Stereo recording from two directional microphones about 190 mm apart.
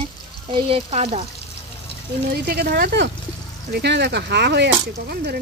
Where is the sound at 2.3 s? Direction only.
55° right (ahead or behind).